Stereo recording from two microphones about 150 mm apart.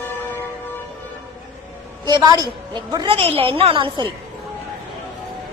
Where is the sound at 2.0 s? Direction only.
25° right (ahead or behind).